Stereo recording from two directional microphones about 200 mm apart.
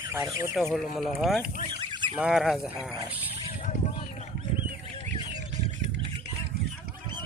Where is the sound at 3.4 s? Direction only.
40° left (ahead or behind).